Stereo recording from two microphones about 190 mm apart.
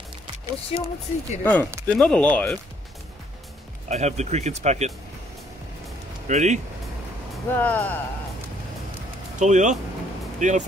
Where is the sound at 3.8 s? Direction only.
35° right (ahead or behind).